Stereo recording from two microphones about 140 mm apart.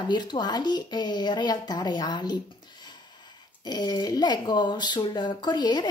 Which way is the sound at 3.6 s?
30° left (ahead or behind).